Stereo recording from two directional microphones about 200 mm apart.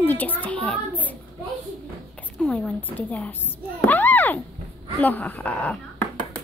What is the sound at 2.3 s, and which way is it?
A woman's voice, 5° left (ahead or behind).